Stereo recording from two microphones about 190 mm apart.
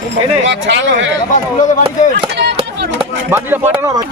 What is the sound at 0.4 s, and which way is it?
Speech, 75° right (ahead or behind).